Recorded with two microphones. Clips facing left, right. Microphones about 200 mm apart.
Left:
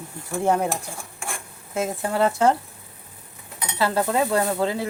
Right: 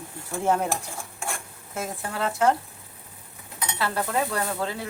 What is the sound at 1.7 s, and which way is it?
Stir, 25° left (ahead or behind).